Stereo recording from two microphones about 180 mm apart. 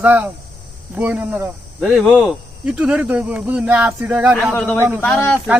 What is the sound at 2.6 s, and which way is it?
Speech, 5° right (ahead or behind).